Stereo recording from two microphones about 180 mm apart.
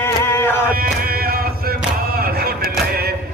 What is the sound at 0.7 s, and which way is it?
Chant, 55° right (ahead or behind).